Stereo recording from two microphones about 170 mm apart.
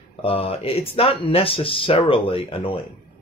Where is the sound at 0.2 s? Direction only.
35° left (ahead or behind).